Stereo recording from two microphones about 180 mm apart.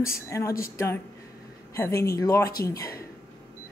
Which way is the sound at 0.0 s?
15° left (ahead or behind).